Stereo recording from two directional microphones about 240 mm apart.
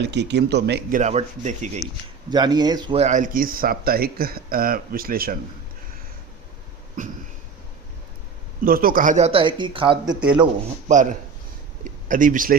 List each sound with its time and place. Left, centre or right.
0.0 s speech: right
2.3 s speech: centre; by 5.4 s right
8.6 s speech: right
10.8 s speech: right